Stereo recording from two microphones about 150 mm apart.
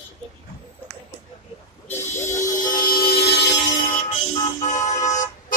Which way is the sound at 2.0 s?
50° left (ahead or behind).